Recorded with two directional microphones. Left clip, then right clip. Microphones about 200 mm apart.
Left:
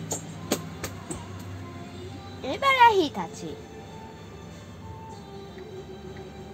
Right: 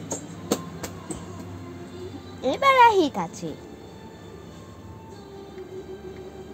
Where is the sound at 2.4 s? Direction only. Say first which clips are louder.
Right 2 dB; 45° right (ahead or behind).